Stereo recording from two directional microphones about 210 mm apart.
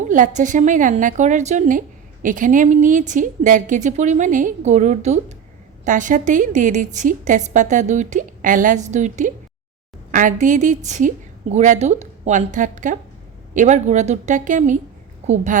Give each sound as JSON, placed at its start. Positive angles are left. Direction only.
{"t": 0.1, "sound": "a woman's voice", "side_deg": -35}